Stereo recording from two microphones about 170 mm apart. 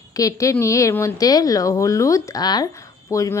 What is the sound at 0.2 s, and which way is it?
A woman's voice, 20° left (ahead or behind).